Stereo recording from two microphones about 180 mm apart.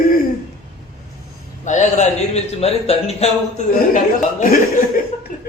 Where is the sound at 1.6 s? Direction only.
40° left (ahead or behind).